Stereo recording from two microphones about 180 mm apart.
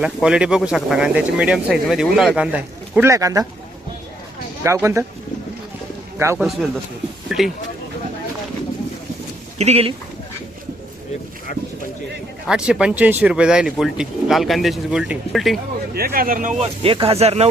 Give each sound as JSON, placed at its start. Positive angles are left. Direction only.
{"t": 0.0, "sound": "speech", "side_deg": -5}
{"t": 4.6, "sound": "speech", "side_deg": -15}
{"t": 6.1, "sound": "speech", "side_deg": -15}
{"t": 7.3, "sound": "speech", "side_deg": 0}
{"t": 9.6, "sound": "speech", "side_deg": -35}
{"t": 12.5, "sound": "speech", "side_deg": -5}
{"t": 16.0, "sound": "speech", "side_deg": -55}
{"t": 16.8, "sound": "speech", "side_deg": -30}